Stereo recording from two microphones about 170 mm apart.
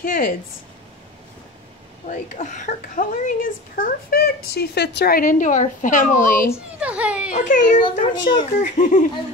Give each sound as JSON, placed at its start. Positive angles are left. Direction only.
{"t": 0.0, "sound": "speech", "side_deg": 55}
{"t": 2.0, "sound": "a woman's voice", "side_deg": 45}
{"t": 6.8, "sound": "a child's voice", "side_deg": -10}
{"t": 7.2, "sound": "a woman's voice", "side_deg": 50}
{"t": 8.0, "sound": "speech", "side_deg": 30}
{"t": 8.5, "sound": "a woman's voice", "side_deg": 50}